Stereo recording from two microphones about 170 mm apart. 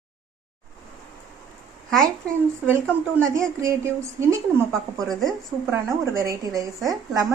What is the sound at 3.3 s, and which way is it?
A woman's voice, 15° right (ahead or behind).